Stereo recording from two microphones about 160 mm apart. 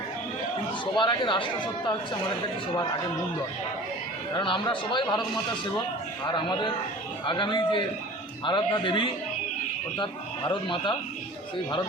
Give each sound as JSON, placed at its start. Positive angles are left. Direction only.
{"t": 0.9, "sound": "speech", "side_deg": 30}
{"t": 4.4, "sound": "a man's voice", "side_deg": 30}
{"t": 6.2, "sound": "a man's voice", "side_deg": 30}